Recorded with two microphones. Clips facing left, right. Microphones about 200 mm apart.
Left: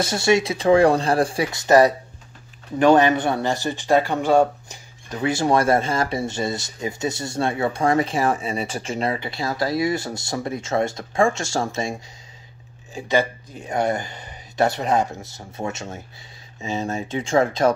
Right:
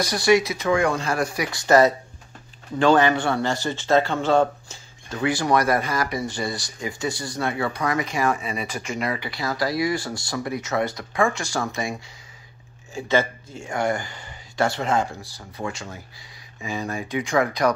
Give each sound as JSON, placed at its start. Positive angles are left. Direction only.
{"t": 0.0, "sound": "speech", "side_deg": 25}
{"t": 12.9, "sound": "speech", "side_deg": 15}